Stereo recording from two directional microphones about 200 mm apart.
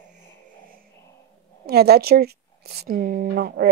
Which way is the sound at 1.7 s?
55° right (ahead or behind).